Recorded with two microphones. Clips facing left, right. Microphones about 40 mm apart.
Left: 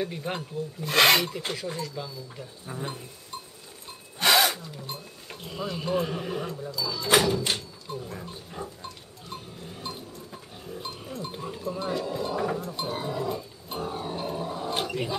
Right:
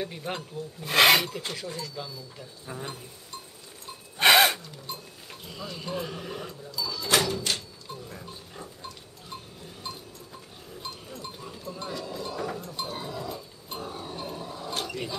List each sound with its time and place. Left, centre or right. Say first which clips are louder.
0.0 s speech: left 2 dB; centre
1.5 s speech: left 3 dB; centre
2.7 s speech: left 1 dB; centre
4.2 s a sound: right 3 dB; right
4.6 s speech: left 2 dB; centre
7.4 s a sound: left 1 dB; centre
8.2 s pig: left 4 dB; centre
9.8 s goat: left 2 dB; centre
11.4 s cowbell: left 6 dB; left
11.8 s speech: left 5 dB; centre
12.9 s pig: left 5 dB; centre
13.9 s a sound: left 5 dB; centre